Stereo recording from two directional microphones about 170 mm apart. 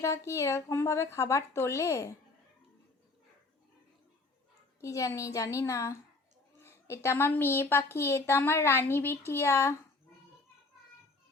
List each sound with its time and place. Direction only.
0.0 s a woman's voice: 15° left (ahead or behind)
4.8 s a woman's voice: 20° left (ahead or behind)